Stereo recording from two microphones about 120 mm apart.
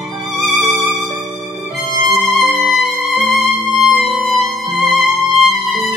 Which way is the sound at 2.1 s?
Centre (ahead or behind).